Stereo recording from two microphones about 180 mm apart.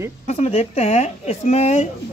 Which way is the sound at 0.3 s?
35° left (ahead or behind).